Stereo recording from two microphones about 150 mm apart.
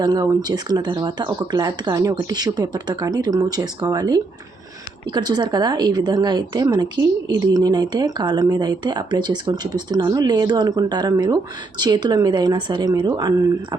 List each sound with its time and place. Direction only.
0.0 s a woman's voice: 25° right (ahead or behind)